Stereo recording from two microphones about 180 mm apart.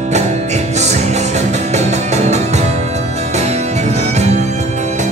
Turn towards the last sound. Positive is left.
turn(degrees=-40)  # may be behind; listen again after turning